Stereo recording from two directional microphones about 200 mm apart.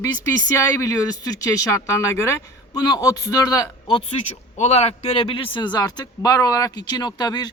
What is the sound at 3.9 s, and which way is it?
A man's voice, 35° left (ahead or behind).